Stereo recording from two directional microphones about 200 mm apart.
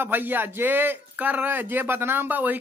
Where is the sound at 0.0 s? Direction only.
10° right (ahead or behind).